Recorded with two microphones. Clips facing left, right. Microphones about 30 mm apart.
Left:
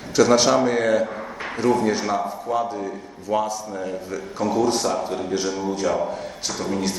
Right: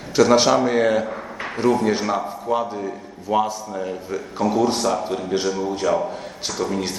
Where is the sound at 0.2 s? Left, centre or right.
Centre.